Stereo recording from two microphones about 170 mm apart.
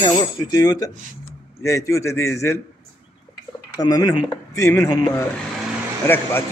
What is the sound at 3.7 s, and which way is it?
A man's voice, 20° left (ahead or behind).